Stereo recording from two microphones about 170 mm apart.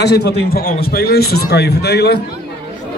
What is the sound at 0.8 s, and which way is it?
A man's voice, 65° left (ahead or behind).